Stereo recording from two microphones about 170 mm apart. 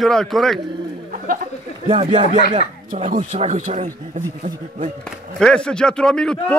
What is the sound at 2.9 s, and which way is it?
Speech, 50° right (ahead or behind).